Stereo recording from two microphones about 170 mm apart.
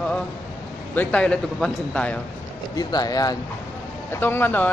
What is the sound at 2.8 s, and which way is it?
A man's voice, 20° left (ahead or behind).